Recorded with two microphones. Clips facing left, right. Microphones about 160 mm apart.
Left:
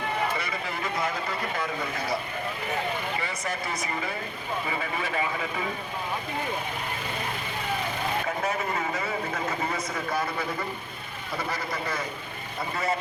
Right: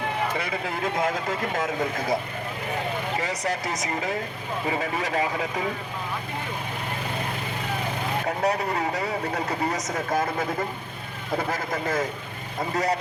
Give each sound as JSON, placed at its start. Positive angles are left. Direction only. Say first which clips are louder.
{"t": 1.5, "sound": "speech", "louder": "right 4 dB", "side_deg": -45}
{"t": 3.2, "sound": "speech", "louder": "right 4 dB", "side_deg": -40}
{"t": 8.4, "sound": "speech", "louder": "right 4 dB", "side_deg": -40}